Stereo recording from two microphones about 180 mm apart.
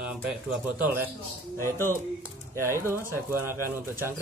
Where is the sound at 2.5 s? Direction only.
15° right (ahead or behind).